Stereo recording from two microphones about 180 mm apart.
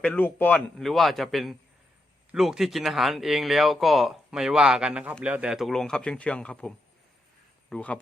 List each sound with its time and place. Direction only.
0.0 s speech: 10° left (ahead or behind)